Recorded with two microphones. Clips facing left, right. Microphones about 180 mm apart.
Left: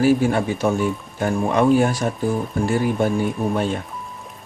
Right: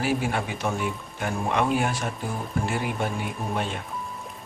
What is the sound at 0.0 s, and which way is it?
Speech, 40° left (ahead or behind).